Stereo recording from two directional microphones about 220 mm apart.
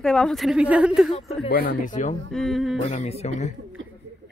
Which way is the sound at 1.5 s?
45° left (ahead or behind).